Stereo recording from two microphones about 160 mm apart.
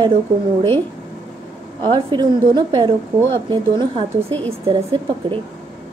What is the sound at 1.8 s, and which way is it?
A woman's voice, 30° right (ahead or behind).